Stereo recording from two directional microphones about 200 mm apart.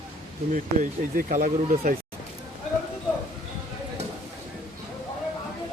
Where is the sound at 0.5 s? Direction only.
40° right (ahead or behind).